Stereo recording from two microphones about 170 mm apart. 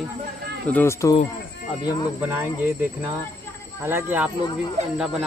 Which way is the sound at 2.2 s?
10° right (ahead or behind).